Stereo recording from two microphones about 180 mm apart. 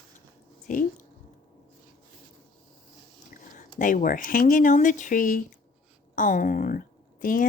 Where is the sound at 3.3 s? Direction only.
45° left (ahead or behind).